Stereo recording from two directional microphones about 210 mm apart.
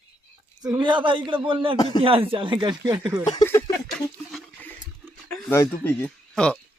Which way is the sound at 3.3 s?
15° left (ahead or behind).